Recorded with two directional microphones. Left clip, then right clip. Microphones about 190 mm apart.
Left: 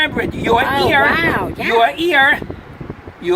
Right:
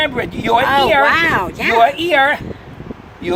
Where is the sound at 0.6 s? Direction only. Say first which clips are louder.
Right 4 dB; 10° right (ahead or behind).